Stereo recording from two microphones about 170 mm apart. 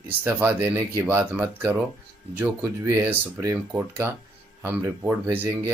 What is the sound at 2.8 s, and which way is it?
Speech, 15° right (ahead or behind).